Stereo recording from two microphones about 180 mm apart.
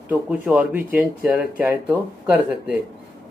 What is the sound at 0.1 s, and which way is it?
Speech, 5° right (ahead or behind).